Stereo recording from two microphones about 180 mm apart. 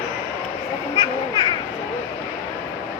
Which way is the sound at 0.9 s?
25° left (ahead or behind).